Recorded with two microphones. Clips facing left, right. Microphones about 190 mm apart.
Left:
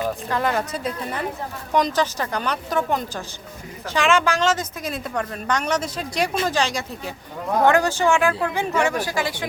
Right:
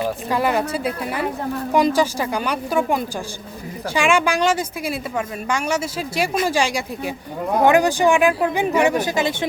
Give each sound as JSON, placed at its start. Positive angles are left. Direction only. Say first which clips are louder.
{"t": 0.3, "sound": "speech", "louder": "right 5 dB", "side_deg": -10}